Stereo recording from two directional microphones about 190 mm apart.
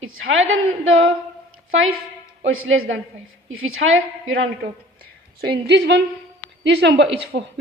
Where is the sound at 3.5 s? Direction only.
90° right.